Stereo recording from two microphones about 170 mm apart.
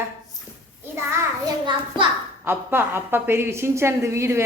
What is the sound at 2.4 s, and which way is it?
A woman's voice, 10° right (ahead or behind).